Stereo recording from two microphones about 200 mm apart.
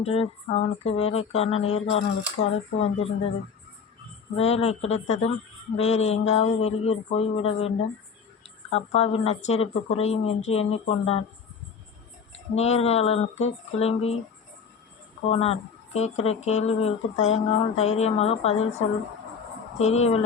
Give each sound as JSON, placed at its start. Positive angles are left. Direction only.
{"t": 0.0, "sound": "speech", "side_deg": 30}
{"t": 4.4, "sound": "speech", "side_deg": 30}
{"t": 8.7, "sound": "speech", "side_deg": 30}
{"t": 12.5, "sound": "speech", "side_deg": 35}
{"t": 15.3, "sound": "speech", "side_deg": 30}
{"t": 19.8, "sound": "speech", "side_deg": 30}